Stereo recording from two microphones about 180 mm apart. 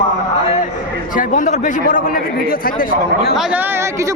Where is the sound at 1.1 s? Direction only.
45° left (ahead or behind).